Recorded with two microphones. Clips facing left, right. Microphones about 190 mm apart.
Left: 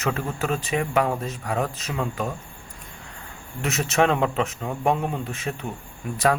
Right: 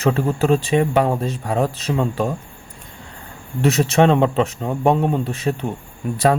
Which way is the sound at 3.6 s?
35° right (ahead or behind).